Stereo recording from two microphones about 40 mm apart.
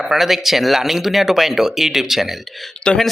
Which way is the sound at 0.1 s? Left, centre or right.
Centre.